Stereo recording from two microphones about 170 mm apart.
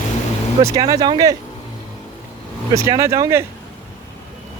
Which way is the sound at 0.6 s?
20° right (ahead or behind).